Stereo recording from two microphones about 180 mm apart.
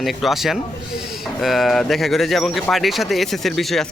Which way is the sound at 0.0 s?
Centre (ahead or behind).